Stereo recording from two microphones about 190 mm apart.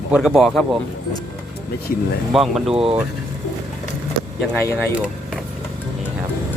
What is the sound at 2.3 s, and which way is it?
Speech, centre (ahead or behind).